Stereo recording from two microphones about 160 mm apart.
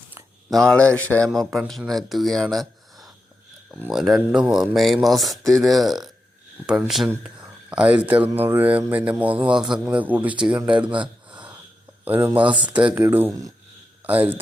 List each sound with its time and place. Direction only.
0.5 s speech: 5° left (ahead or behind)
3.7 s speech: 10° right (ahead or behind)
10.8 s speech: 30° right (ahead or behind)
12.0 s speech: 10° right (ahead or behind)